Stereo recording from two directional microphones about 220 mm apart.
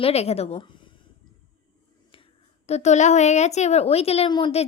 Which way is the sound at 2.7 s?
30° left (ahead or behind).